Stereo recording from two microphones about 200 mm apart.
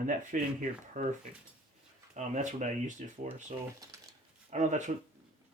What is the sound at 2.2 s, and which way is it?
Speech, 35° right (ahead or behind).